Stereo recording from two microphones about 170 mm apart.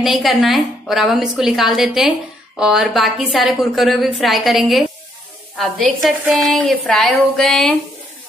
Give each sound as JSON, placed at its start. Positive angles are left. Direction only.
{"t": 0.0, "sound": "a woman's voice", "side_deg": 0}
{"t": 6.0, "sound": "a woman's voice", "side_deg": 0}